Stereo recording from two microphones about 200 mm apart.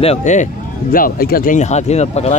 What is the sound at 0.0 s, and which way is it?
Speech, 35° left (ahead or behind).